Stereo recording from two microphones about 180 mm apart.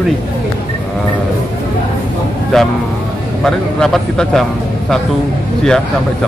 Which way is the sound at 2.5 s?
5° left (ahead or behind).